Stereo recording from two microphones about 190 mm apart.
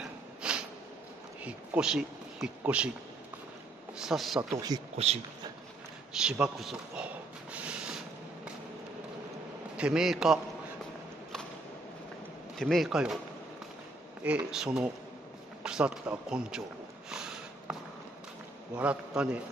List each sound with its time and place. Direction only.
0.0 s snort: 5° right (ahead or behind)
1.4 s speech: 5° right (ahead or behind)
4.0 s speech: centre (ahead or behind)
4.5 s speech: 20° right (ahead or behind)
4.9 s speech: 35° right (ahead or behind)
6.1 s speech: 5° right (ahead or behind)
7.5 s a sound: 5° right (ahead or behind)
9.8 s speech: 5° right (ahead or behind)
12.5 s speech: centre (ahead or behind)
14.2 s speech: 5° right (ahead or behind)
17.1 s a sound: 5° right (ahead or behind)
18.8 s a man's voice: 5° right (ahead or behind)